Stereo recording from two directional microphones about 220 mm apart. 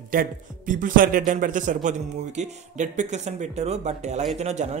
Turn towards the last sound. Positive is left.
turn(degrees=-30)  # may be behind; listen again after turning